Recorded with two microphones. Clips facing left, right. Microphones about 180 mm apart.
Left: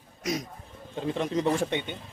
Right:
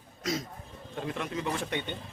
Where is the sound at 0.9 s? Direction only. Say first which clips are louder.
Left 6 dB; 30° left (ahead or behind).